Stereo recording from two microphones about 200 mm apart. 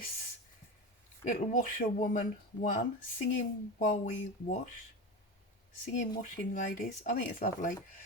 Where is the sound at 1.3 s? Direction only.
45° left (ahead or behind).